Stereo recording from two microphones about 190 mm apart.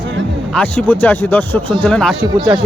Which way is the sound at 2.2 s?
20° right (ahead or behind).